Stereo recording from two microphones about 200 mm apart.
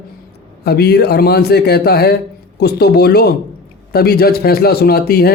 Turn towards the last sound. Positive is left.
turn(degrees=50)  # may be behind; listen again after turning